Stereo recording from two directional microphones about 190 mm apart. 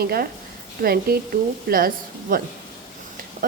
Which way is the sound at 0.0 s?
55° right (ahead or behind).